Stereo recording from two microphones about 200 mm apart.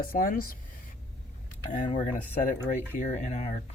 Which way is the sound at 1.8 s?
35° left (ahead or behind).